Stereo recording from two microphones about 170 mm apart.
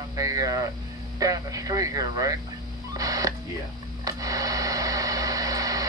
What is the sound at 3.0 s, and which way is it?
Telephone dialing, 20° right (ahead or behind).